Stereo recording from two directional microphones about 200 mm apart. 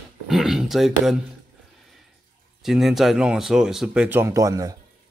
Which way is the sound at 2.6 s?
Centre (ahead or behind).